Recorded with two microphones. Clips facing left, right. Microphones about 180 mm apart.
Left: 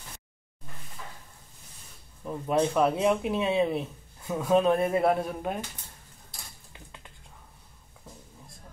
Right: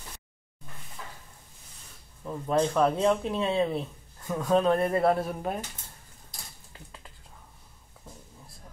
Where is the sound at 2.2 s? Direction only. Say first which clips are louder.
Even; 10° left (ahead or behind).